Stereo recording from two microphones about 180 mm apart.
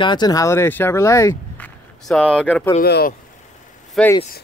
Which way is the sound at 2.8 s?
60° left (ahead or behind).